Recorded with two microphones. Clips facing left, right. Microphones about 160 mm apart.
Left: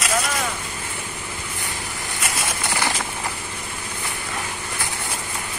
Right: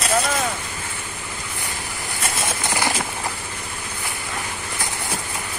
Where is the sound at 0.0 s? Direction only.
25° right (ahead or behind).